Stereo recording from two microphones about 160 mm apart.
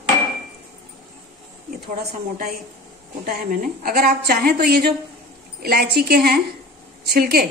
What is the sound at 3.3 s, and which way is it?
A woman's voice, 65° right (ahead or behind).